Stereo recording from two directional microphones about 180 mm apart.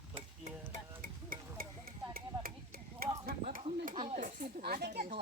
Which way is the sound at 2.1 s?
55° right (ahead or behind).